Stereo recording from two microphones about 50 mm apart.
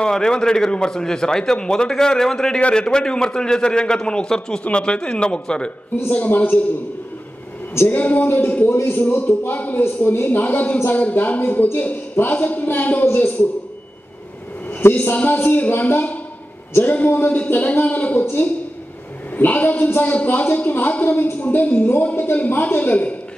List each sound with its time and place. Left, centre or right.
0.0 s a man's voice: centre
6.0 s a woman's voice: left
7.9 s a woman's voice: left
8.6 s a man's voice: left
9.2 s a woman's voice: left
14.7 s a sound: left
15.2 s a woman's voice: left
19.3 s a woman's voice: left